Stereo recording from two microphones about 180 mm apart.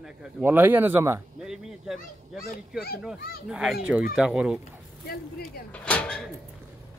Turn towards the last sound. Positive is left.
turn(degrees=5)  # may be behind; listen again after turning